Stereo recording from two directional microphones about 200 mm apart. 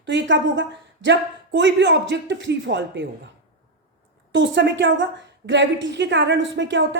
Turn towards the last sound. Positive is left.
turn(degrees=-60)  # may be behind; listen again after turning